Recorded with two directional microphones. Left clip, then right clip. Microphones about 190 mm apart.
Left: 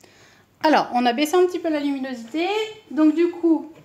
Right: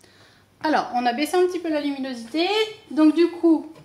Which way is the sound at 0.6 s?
50° left (ahead or behind).